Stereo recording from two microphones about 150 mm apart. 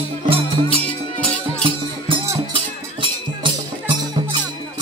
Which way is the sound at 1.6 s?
35° right (ahead or behind).